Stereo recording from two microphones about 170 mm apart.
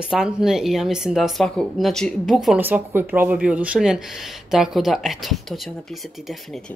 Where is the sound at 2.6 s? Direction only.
10° right (ahead or behind).